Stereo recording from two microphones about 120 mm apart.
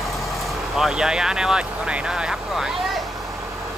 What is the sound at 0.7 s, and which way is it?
Speech, 5° right (ahead or behind).